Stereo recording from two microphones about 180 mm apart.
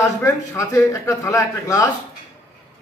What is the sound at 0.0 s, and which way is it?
A man's voice, 15° left (ahead or behind).